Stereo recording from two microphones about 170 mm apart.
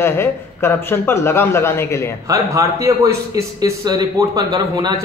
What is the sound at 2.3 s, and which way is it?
A man's voice, 20° right (ahead or behind).